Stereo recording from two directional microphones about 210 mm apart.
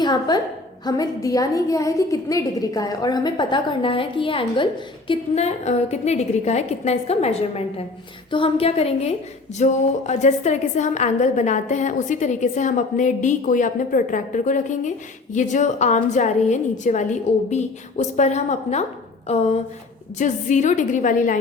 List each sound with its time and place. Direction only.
0.0 s a woman's voice: 20° left (ahead or behind)
20.1 s a woman's voice: 35° left (ahead or behind)